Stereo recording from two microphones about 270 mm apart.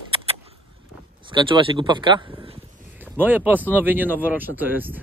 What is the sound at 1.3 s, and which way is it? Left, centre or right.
Speech, centre.